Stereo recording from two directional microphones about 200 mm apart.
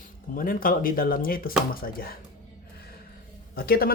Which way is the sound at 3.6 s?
50° left (ahead or behind).